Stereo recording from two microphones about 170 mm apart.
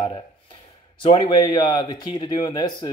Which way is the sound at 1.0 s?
30° left (ahead or behind).